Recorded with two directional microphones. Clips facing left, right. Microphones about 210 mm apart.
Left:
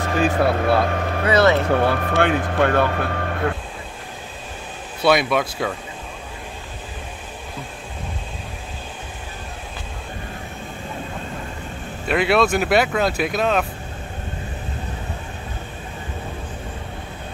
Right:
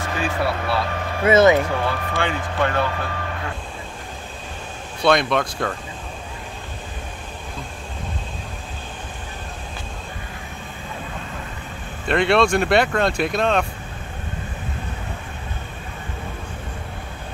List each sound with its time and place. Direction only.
0.0 s speech: 45° left (ahead or behind)
1.2 s speech: 20° right (ahead or behind)
1.7 s speech: 60° left (ahead or behind)
5.0 s speech: 5° left (ahead or behind)
12.1 s speech: 5° left (ahead or behind)